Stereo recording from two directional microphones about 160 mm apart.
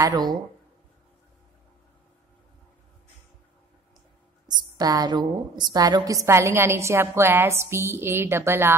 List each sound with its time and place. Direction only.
0.0 s speech: 25° right (ahead or behind)
4.5 s a woman's voice: 25° right (ahead or behind)